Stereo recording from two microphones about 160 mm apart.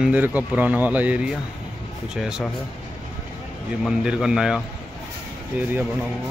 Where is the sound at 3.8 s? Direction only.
5° right (ahead or behind).